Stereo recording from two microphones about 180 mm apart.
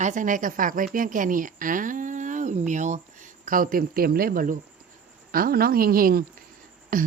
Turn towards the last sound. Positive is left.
turn(degrees=-50)  # may be behind; listen again after turning